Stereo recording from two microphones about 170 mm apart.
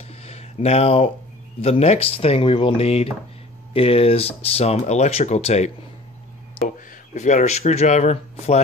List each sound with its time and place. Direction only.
0.1 s a sound: 35° left (ahead or behind)
1.6 s speech: 40° left (ahead or behind)
7.2 s speech: 45° left (ahead or behind)